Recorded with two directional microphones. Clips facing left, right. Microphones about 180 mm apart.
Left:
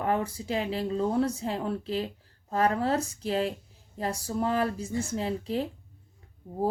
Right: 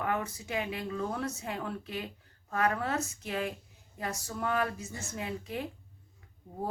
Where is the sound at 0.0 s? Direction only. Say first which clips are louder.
Left 5 dB; 30° left (ahead or behind).